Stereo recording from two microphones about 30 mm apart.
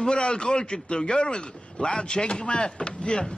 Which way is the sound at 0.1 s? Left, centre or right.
Left.